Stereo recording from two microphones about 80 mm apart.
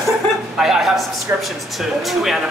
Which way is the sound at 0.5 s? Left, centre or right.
Centre.